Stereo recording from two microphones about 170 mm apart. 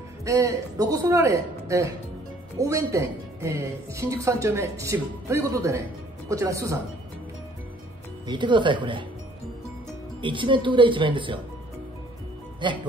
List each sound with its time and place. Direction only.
0.2 s a woman's voice: 20° right (ahead or behind)
8.3 s speech: 25° right (ahead or behind)
10.2 s speech: 30° right (ahead or behind)
12.6 s speech: 30° right (ahead or behind)